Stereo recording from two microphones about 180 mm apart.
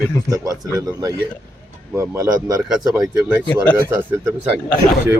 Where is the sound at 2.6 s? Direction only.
Centre (ahead or behind).